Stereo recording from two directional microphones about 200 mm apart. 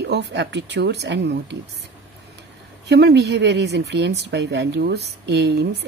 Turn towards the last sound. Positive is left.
turn(degrees=-60)  # may be behind; listen again after turning